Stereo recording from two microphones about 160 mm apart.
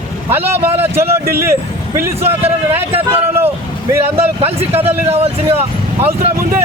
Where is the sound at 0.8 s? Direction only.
15° right (ahead or behind).